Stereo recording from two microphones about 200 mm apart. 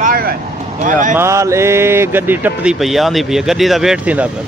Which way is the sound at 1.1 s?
15° right (ahead or behind).